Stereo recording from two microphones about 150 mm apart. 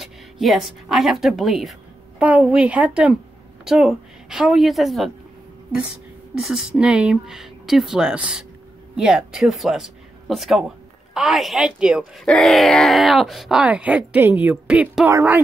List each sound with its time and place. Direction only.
0.0 s a woman's voice: centre (ahead or behind)
6.3 s speech: 5° right (ahead or behind)